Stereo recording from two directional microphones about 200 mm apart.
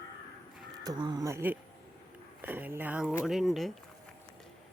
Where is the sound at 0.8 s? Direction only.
20° right (ahead or behind); by 3.7 s centre (ahead or behind).